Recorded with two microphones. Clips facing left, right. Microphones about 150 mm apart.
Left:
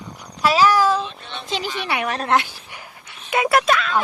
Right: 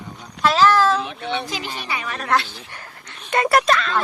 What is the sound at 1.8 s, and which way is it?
Speech, 65° left (ahead or behind).